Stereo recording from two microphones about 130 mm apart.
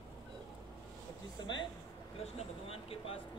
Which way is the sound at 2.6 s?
45° left (ahead or behind).